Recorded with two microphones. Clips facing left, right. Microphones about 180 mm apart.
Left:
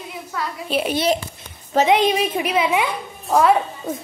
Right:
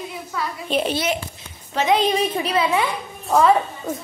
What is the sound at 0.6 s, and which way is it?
Speech, 5° left (ahead or behind).